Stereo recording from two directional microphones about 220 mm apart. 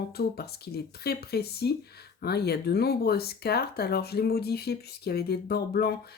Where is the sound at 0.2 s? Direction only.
45° left (ahead or behind).